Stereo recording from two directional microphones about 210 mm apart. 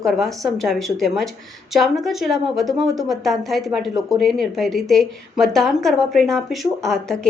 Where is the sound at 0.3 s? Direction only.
Centre (ahead or behind).